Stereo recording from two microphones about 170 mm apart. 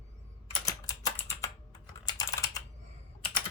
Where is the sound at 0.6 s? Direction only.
20° left (ahead or behind).